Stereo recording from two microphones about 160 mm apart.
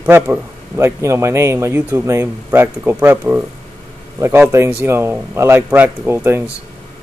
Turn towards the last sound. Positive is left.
turn(degrees=-15)  # may be behind; listen again after turning